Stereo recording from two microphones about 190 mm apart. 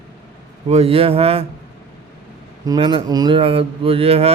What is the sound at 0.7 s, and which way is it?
Mantra, 30° right (ahead or behind).